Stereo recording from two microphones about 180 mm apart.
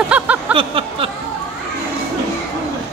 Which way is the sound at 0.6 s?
30° right (ahead or behind).